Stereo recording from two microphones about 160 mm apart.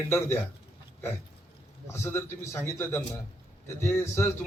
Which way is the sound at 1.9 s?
15° left (ahead or behind).